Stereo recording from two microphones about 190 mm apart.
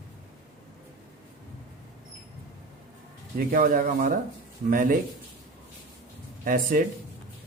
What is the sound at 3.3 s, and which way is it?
Speech, 50° right (ahead or behind).